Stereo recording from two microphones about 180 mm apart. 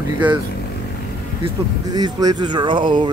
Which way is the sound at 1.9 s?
20° right (ahead or behind).